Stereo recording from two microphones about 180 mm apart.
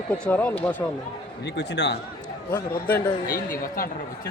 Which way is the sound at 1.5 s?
70° left (ahead or behind).